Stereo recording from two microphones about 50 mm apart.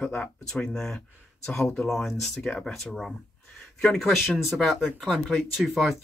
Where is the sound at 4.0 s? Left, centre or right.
Centre.